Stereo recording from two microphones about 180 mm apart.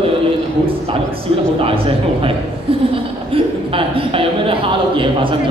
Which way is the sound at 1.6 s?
30° right (ahead or behind).